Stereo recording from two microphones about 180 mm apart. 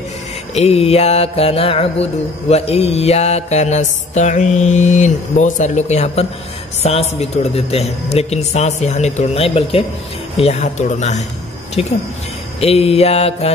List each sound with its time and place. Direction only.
0.6 s mantra: 35° left (ahead or behind)